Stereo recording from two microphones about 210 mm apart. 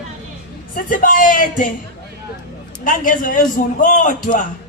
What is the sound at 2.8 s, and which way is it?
A man's voice, 40° left (ahead or behind).